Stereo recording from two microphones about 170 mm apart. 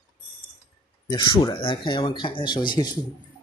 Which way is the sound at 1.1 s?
25° left (ahead or behind).